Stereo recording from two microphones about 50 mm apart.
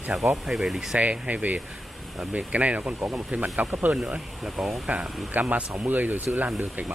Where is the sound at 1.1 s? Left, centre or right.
Right.